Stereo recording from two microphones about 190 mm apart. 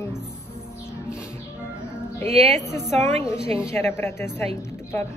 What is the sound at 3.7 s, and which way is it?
Speech, 15° left (ahead or behind).